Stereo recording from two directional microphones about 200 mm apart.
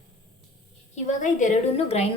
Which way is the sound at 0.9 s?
40° left (ahead or behind).